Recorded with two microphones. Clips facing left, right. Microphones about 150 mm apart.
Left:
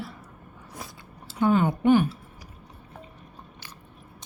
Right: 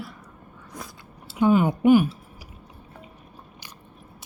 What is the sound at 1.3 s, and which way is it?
Speech, 10° right (ahead or behind).